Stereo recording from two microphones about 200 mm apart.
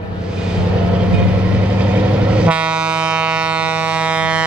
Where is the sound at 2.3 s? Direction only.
5° right (ahead or behind).